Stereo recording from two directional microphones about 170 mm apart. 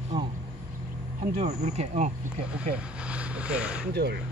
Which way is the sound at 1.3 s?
40° right (ahead or behind).